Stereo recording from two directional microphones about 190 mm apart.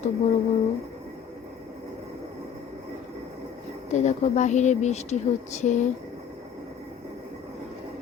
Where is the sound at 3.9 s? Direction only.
40° left (ahead or behind).